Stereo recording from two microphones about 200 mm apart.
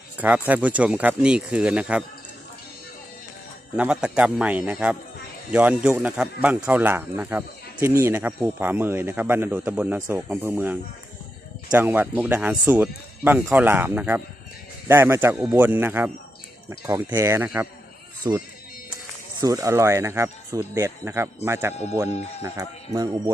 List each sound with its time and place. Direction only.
0.2 s a man's voice: 5° right (ahead or behind)
3.8 s a man's voice: 5° right (ahead or behind)